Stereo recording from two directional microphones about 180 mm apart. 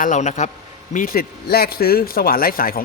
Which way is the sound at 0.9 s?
50° left (ahead or behind).